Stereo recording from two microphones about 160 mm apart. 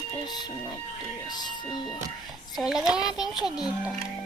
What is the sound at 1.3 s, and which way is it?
Speech, 25° left (ahead or behind).